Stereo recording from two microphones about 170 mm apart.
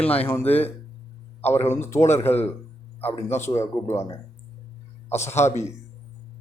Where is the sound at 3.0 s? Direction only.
35° left (ahead or behind).